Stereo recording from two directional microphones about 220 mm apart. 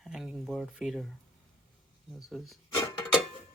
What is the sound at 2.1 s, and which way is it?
Speech, centre (ahead or behind).